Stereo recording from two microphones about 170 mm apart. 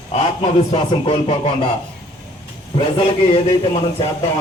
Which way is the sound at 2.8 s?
35° left (ahead or behind).